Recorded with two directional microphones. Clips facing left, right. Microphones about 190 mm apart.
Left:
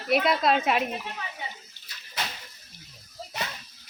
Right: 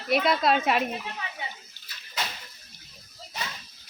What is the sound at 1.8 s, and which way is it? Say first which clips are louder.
Bathtub: even; 25° left (ahead or behind).